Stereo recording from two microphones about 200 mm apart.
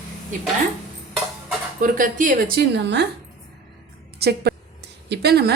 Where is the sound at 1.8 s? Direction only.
45° right (ahead or behind); by 3.0 s 60° right (ahead or behind).